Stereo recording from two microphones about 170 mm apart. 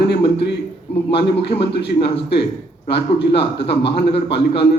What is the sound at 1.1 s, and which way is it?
A man's voice, 35° left (ahead or behind).